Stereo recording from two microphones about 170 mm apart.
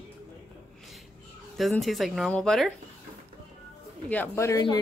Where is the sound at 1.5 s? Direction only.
Centre (ahead or behind).